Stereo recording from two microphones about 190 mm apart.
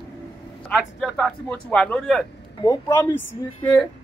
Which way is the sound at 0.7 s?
Centre (ahead or behind).